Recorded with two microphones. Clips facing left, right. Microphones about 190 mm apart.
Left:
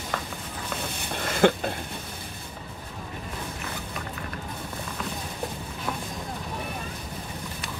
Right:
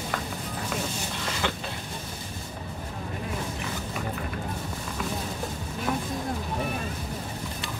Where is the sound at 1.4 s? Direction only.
50° left (ahead or behind).